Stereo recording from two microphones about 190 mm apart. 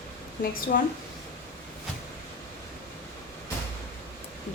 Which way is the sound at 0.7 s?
50° left (ahead or behind).